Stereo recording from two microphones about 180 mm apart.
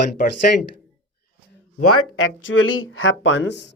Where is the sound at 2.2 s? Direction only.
90° left.